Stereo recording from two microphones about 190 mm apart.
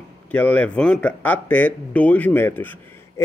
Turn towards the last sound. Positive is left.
turn(degrees=10)  # may be behind; listen again after turning